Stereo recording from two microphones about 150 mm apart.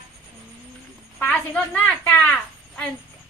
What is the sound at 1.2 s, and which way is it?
A woman's voice, 10° left (ahead or behind).